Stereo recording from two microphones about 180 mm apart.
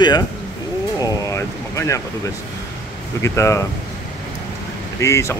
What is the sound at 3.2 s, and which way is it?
Speech, 15° left (ahead or behind).